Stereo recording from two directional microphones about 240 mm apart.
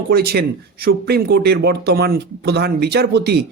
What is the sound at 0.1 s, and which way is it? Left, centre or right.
Speech, right.